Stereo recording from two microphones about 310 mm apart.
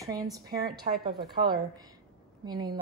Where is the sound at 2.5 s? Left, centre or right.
Centre.